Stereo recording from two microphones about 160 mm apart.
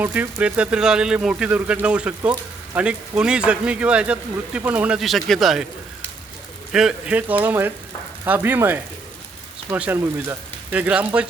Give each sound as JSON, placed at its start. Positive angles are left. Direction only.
{"t": 0.0, "sound": "speech", "side_deg": -10}
{"t": 6.7, "sound": "speech", "side_deg": -5}